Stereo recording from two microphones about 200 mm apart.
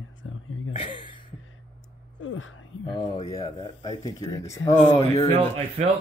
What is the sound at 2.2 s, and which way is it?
Speech, 75° left (ahead or behind).